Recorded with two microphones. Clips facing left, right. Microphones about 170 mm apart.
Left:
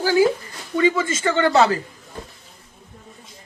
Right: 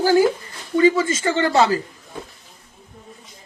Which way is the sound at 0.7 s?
35° right (ahead or behind).